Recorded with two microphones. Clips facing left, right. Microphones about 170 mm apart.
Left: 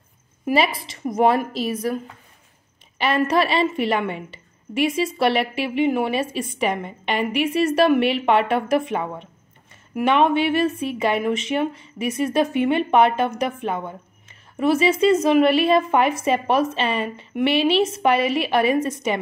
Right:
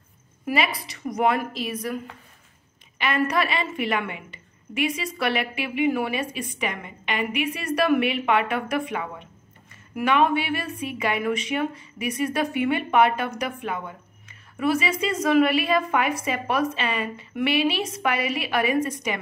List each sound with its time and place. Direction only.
0.5 s a woman's voice: 25° left (ahead or behind)
3.0 s a woman's voice: 30° left (ahead or behind)
9.9 s a woman's voice: 25° left (ahead or behind)